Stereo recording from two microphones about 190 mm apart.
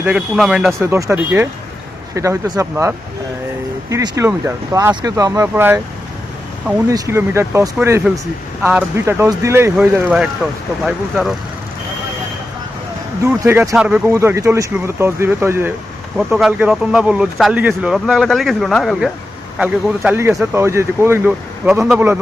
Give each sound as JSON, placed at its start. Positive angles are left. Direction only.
{"t": 0.0, "sound": "speech", "side_deg": -5}
{"t": 0.8, "sound": "speech", "side_deg": -15}
{"t": 6.9, "sound": "speech", "side_deg": -15}
{"t": 13.2, "sound": "speech", "side_deg": -10}